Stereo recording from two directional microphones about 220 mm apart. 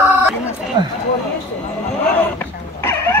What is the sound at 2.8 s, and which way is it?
Dog, 10° left (ahead or behind).